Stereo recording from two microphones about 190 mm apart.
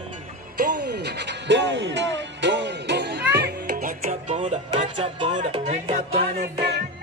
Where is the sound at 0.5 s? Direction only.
60° right (ahead or behind); by 6.0 s 35° right (ahead or behind).